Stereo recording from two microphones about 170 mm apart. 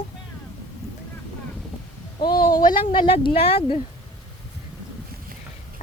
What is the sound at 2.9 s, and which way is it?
Speech, 30° left (ahead or behind).